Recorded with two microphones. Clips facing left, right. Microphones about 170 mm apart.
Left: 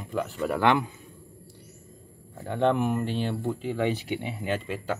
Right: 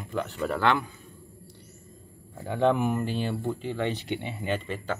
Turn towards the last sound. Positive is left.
turn(degrees=5)  # may be behind; listen again after turning